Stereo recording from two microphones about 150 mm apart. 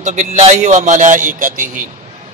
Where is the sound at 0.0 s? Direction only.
55° right (ahead or behind).